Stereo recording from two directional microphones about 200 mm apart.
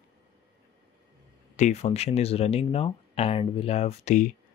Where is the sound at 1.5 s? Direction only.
35° left (ahead or behind).